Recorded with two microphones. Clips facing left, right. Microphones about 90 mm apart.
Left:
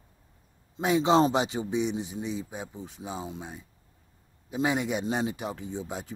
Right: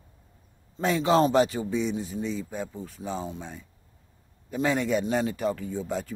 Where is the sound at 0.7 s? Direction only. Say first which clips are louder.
Even; 15° left (ahead or behind).